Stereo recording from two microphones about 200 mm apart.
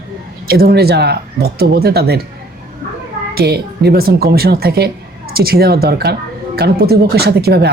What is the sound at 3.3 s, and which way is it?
Speech, 55° right (ahead or behind).